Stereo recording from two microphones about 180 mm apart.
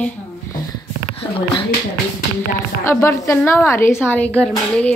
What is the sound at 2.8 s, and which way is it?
Speech, 15° left (ahead or behind).